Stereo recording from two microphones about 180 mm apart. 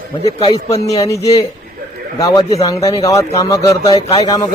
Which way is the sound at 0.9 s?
20° left (ahead or behind).